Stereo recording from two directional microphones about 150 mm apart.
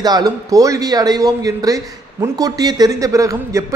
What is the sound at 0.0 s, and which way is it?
Speech, 25° right (ahead or behind).